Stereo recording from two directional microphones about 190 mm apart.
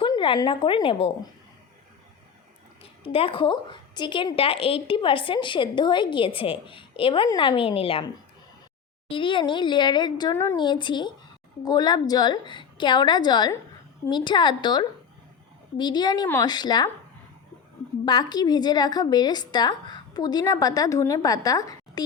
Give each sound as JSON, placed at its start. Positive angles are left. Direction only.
{"t": 0.0, "sound": "a woman's voice", "side_deg": 25}
{"t": 2.8, "sound": "a woman's voice", "side_deg": 30}
{"t": 18.0, "sound": "a woman's voice", "side_deg": 20}